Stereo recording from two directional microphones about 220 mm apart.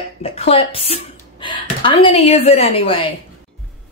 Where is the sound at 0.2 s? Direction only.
25° left (ahead or behind).